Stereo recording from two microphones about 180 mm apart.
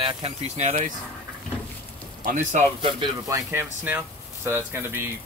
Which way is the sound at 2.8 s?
25° right (ahead or behind).